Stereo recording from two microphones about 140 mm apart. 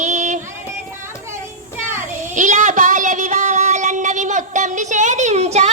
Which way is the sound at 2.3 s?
60° right (ahead or behind).